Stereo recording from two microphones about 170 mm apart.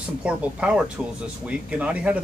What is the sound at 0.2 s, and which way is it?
Speech, 5° right (ahead or behind).